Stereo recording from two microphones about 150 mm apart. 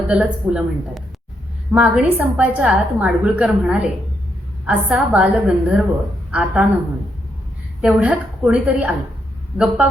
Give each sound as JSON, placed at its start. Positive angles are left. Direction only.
{"t": 0.1, "sound": "a woman's voice", "side_deg": -5}
{"t": 7.8, "sound": "a woman's voice", "side_deg": -10}